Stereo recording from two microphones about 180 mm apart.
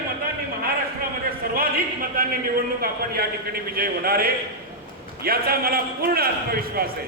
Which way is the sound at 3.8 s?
55° right (ahead or behind).